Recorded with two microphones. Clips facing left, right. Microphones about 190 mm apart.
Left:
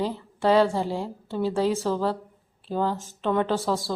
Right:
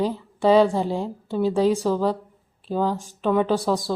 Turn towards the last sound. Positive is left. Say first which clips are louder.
# right 3 dB
turn(degrees=-15)  # may be behind; listen again after turning